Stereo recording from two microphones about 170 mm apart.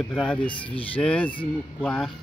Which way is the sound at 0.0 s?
5° left (ahead or behind).